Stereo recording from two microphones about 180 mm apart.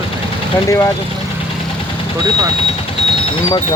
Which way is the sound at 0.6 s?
15° left (ahead or behind).